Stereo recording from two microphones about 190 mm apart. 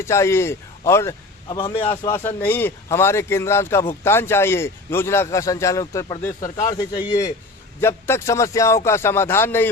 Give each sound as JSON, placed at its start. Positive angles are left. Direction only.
{"t": 0.0, "sound": "a man's voice", "side_deg": 15}
{"t": 1.5, "sound": "a man's voice", "side_deg": 25}
{"t": 1.9, "sound": "a man's voice", "side_deg": 10}